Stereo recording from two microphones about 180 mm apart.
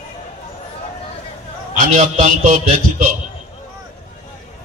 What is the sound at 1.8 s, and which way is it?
A man's voice, 45° right (ahead or behind).